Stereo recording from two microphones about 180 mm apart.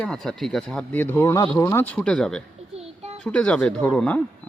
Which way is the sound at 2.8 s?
35° right (ahead or behind).